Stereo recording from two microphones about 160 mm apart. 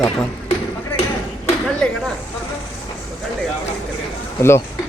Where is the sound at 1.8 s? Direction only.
5° left (ahead or behind).